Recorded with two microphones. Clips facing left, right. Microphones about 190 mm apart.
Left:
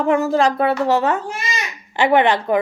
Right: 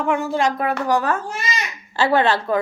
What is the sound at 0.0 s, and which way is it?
A child's voice, 35° left (ahead or behind).